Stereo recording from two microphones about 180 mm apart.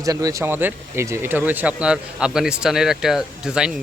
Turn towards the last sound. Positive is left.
turn(degrees=-5)  # may be behind; listen again after turning